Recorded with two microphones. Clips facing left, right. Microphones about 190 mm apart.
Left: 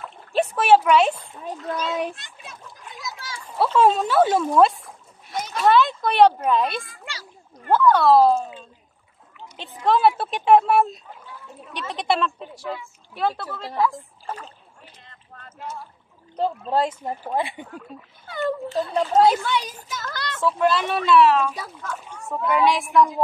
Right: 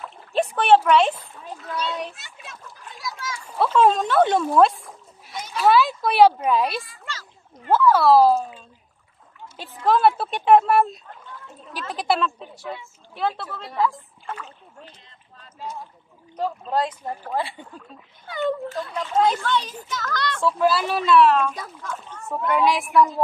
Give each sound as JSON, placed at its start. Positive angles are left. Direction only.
{"t": 0.0, "sound": "splash", "side_deg": 0}
{"t": 1.8, "sound": "a child's voice", "side_deg": 0}
{"t": 3.0, "sound": "splash", "side_deg": 25}
{"t": 3.5, "sound": "a child's voice", "side_deg": 5}
{"t": 8.4, "sound": "speech", "side_deg": 20}
{"t": 9.8, "sound": "a child's voice", "side_deg": 0}
{"t": 14.2, "sound": "speech", "side_deg": 35}
{"t": 15.0, "sound": "a sound", "side_deg": 60}
{"t": 15.6, "sound": "speech", "side_deg": -15}
{"t": 16.3, "sound": "speech", "side_deg": 30}
{"t": 17.7, "sound": "a child's voice", "side_deg": 5}
{"t": 18.7, "sound": "a child's voice", "side_deg": 30}
{"t": 19.3, "sound": "speech", "side_deg": 10}
{"t": 20.4, "sound": "a child's voice", "side_deg": -5}